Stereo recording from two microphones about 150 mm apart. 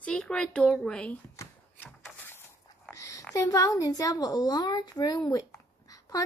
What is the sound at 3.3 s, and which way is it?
A woman's voice, 20° left (ahead or behind).